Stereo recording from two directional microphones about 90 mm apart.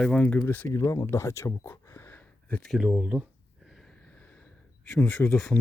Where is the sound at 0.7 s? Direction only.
30° left (ahead or behind).